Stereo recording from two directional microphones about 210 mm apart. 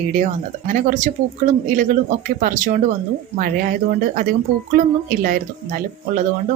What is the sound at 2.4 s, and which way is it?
Speech, 40° right (ahead or behind).